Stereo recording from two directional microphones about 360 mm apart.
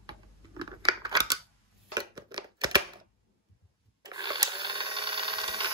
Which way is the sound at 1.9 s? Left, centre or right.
Centre.